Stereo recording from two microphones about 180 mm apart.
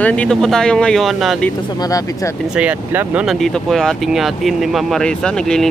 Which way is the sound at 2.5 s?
10° right (ahead or behind).